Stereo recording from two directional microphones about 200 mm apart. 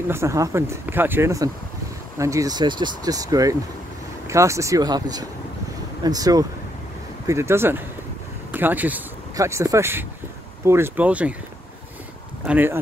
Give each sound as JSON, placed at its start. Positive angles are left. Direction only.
{"t": 0.1, "sound": "speech", "side_deg": -15}
{"t": 12.4, "sound": "speech", "side_deg": -10}